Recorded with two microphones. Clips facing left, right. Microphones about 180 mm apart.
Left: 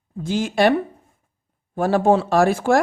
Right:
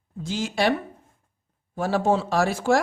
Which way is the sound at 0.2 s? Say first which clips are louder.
Left 6 dB; 55° left (ahead or behind).